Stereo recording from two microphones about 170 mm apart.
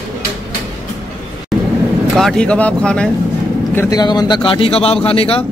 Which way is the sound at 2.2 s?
5° left (ahead or behind).